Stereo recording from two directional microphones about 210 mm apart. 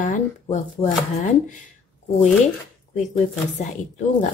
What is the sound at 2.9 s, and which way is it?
Speech, 35° left (ahead or behind).